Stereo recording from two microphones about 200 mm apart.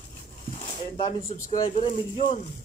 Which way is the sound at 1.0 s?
30° left (ahead or behind).